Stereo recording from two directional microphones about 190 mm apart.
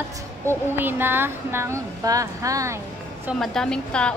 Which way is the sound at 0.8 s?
10° right (ahead or behind).